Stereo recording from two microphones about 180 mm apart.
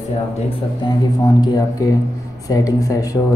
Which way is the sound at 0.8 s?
25° left (ahead or behind).